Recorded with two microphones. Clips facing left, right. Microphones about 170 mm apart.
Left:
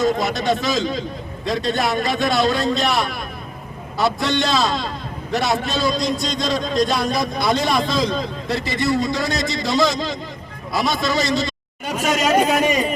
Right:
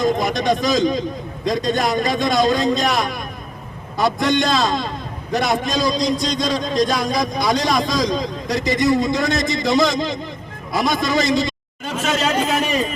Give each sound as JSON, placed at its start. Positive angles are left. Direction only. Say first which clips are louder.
{"t": 0.0, "sound": "a man's voice", "louder": "right 1 dB", "side_deg": -15}
{"t": 5.9, "sound": "a man's voice", "louder": "right 2 dB", "side_deg": 50}
{"t": 7.0, "sound": "a man's voice", "louder": "right 1 dB", "side_deg": -15}
{"t": 11.9, "sound": "a sound", "louder": "left 2 dB", "side_deg": 10}